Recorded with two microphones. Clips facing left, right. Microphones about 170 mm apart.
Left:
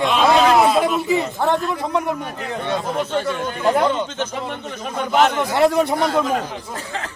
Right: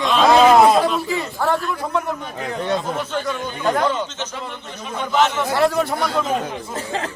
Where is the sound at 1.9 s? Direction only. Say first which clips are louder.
Left 1 dB; 5° left (ahead or behind).